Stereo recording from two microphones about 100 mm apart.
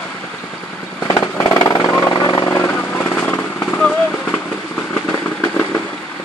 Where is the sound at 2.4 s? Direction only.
20° left (ahead or behind).